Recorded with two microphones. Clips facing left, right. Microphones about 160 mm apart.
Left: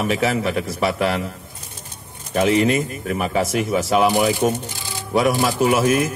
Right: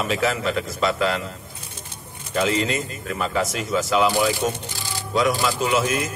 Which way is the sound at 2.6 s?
60° left (ahead or behind).